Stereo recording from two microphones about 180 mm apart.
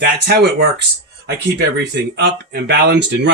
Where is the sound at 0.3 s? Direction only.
65° right (ahead or behind).